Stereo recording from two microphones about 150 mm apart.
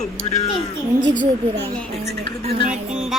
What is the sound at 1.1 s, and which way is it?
Speech, 60° right (ahead or behind).